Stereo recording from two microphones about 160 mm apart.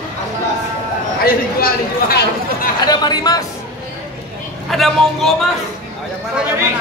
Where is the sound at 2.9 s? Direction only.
25° left (ahead or behind).